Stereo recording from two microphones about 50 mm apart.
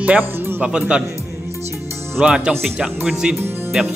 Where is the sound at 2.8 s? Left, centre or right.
Centre.